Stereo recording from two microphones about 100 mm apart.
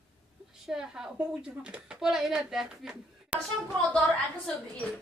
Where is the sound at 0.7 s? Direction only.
5° right (ahead or behind).